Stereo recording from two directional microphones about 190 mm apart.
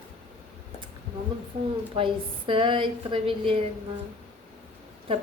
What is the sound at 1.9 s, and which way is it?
Speech, 25° right (ahead or behind).